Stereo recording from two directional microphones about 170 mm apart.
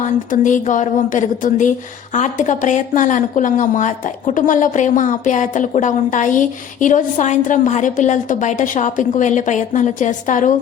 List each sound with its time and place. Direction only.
0.0 s speech: 50° left (ahead or behind)